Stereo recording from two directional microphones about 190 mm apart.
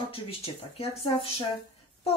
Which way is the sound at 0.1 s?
30° left (ahead or behind).